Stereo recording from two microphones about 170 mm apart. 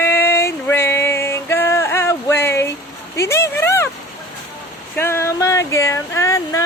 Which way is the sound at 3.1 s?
15° left (ahead or behind).